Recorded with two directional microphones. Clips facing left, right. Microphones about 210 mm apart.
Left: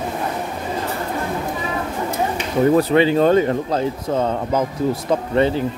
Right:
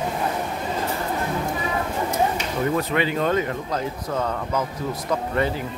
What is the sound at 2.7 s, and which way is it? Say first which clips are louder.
Speech: left 9 dB; 30° left (ahead or behind).